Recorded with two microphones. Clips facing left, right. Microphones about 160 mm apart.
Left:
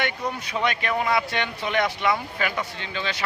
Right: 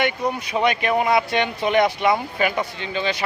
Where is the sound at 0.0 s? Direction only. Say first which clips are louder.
Right 5 dB; 15° right (ahead or behind).